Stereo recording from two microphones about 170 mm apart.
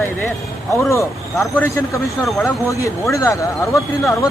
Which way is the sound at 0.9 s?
15° left (ahead or behind).